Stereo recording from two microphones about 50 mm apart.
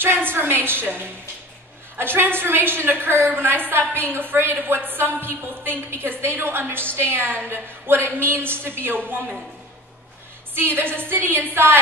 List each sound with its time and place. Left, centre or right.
0.0 s a woman's voice: right
10.5 s a woman's voice: right